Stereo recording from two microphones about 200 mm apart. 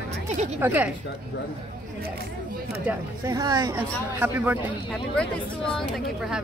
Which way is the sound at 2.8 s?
15° right (ahead or behind).